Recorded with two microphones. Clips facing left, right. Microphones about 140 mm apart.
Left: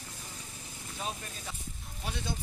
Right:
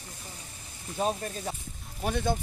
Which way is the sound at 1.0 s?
40° right (ahead or behind).